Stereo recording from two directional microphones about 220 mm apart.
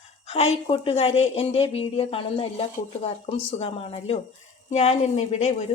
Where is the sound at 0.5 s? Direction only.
25° left (ahead or behind).